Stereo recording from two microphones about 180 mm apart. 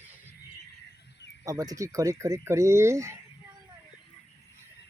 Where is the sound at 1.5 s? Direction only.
20° right (ahead or behind).